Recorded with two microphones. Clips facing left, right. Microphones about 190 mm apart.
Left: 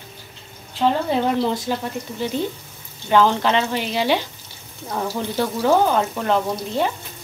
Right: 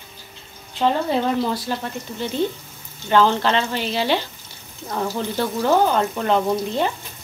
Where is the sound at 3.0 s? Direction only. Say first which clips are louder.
Even; 10° left (ahead or behind).